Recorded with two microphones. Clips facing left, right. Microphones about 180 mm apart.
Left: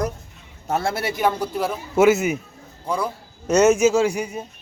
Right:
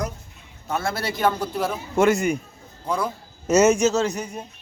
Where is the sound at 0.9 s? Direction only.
20° left (ahead or behind).